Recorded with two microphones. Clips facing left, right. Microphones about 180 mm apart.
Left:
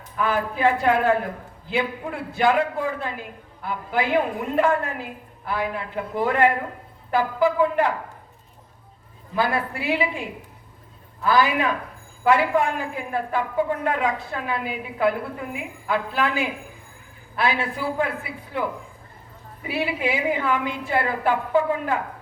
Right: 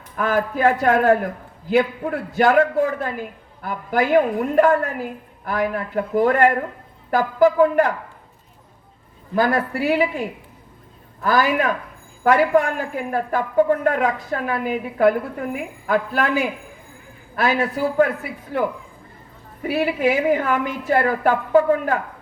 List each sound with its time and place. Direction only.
0.2 s a woman's voice: 45° right (ahead or behind)
9.3 s a woman's voice: 40° right (ahead or behind)
19.6 s a woman's voice: 45° right (ahead or behind)